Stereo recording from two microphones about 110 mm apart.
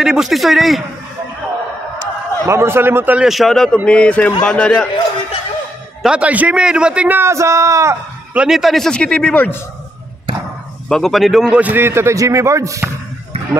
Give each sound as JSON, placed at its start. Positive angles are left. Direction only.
{"t": 0.0, "sound": "a man's voice", "side_deg": -5}
{"t": 2.0, "sound": "a man's voice", "side_deg": -25}
{"t": 3.3, "sound": "a man's voice", "side_deg": 0}
{"t": 6.0, "sound": "a man's voice", "side_deg": -10}
{"t": 8.3, "sound": "a man's voice", "side_deg": -5}
{"t": 10.9, "sound": "a man's voice", "side_deg": 0}